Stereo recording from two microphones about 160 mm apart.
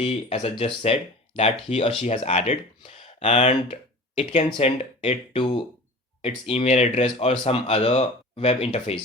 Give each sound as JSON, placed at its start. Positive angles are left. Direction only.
{"t": 0.0, "sound": "speech", "side_deg": 40}